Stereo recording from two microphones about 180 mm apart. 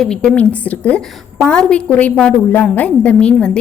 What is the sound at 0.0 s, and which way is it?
A woman's voice, 5° left (ahead or behind).